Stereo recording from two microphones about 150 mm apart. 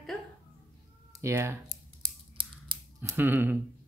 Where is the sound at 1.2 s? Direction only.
20° right (ahead or behind).